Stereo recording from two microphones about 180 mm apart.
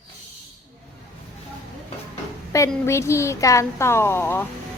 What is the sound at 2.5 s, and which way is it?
A woman's voice, 15° left (ahead or behind).